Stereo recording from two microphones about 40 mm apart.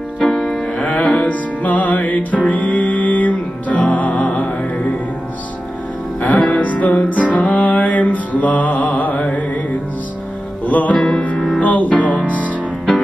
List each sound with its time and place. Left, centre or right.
0.2 s music: centre
0.8 s music: left
6.2 s music: left
10.7 s music: left
12.2 s music: right